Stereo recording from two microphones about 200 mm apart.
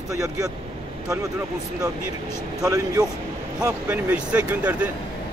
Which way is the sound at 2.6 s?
15° right (ahead or behind).